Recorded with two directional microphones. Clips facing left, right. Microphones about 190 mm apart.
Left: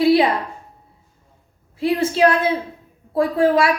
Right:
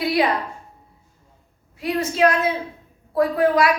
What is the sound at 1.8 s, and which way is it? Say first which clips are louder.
A woman's voice: left 3 dB; 30° left (ahead or behind).